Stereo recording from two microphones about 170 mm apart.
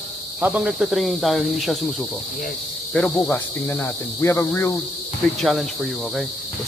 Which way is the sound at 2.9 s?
10° left (ahead or behind).